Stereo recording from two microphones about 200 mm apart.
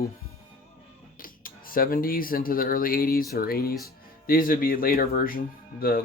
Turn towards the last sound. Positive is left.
turn(degrees=45)  # may be behind; listen again after turning